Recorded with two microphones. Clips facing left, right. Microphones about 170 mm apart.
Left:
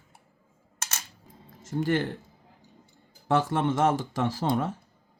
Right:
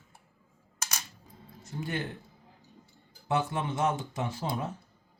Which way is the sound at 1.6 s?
90° left.